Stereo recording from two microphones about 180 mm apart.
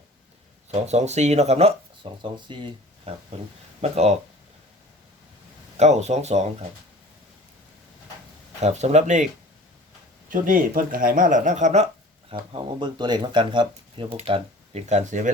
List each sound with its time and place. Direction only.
0.7 s speech: 40° right (ahead or behind)
5.7 s speech: 40° right (ahead or behind)
8.6 s speech: 40° right (ahead or behind)
10.2 s speech: 50° right (ahead or behind)
12.3 s speech: 25° right (ahead or behind); by 15.3 s 40° right (ahead or behind)